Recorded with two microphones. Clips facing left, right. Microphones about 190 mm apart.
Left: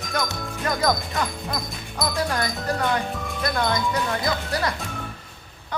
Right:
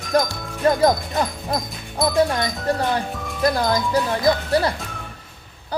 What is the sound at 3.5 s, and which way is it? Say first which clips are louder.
Music: right 4 dB; 35° right (ahead or behind).